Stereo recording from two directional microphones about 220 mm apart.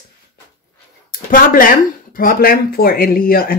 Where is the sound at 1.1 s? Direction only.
40° left (ahead or behind).